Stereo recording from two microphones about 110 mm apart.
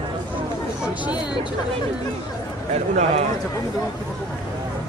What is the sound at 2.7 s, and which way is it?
Speech, 90° right.